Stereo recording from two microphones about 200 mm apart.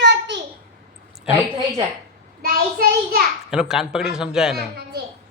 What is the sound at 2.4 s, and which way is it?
Child singing, 50° right (ahead or behind).